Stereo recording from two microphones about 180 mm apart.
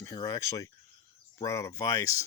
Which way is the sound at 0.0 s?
20° left (ahead or behind).